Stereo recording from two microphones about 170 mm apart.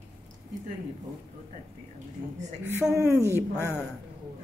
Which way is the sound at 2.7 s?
15° right (ahead or behind).